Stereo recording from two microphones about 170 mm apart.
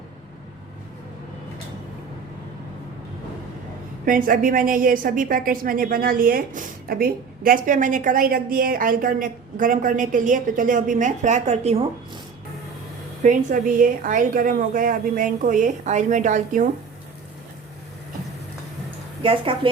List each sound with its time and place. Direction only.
4.0 s a woman's voice: 55° right (ahead or behind)
13.2 s a woman's voice: 50° right (ahead or behind)
19.2 s speech: 30° right (ahead or behind)